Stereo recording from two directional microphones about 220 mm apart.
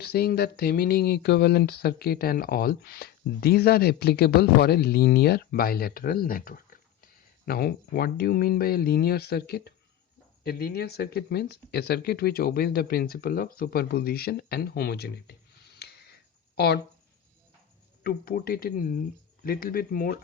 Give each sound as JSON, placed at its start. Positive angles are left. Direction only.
{"t": 0.0, "sound": "speech", "side_deg": 45}
{"t": 16.6, "sound": "speech", "side_deg": 45}
{"t": 18.0, "sound": "speech", "side_deg": 45}